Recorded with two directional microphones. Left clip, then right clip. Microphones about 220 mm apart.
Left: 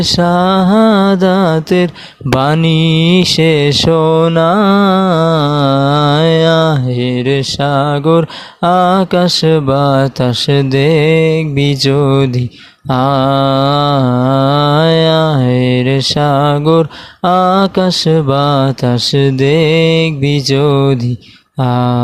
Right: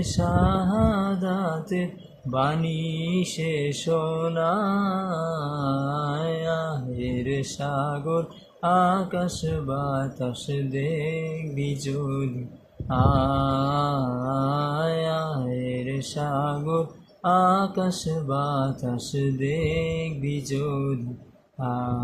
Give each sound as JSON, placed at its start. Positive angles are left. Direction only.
{"t": 0.2, "sound": "mantra", "side_deg": 45}
{"t": 21.7, "sound": "mantra", "side_deg": 45}